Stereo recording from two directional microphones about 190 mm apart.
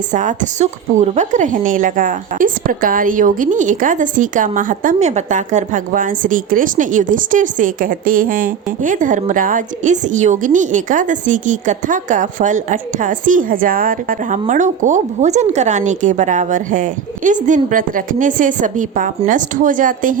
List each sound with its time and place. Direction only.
0.1 s a woman's voice: 40° right (ahead or behind)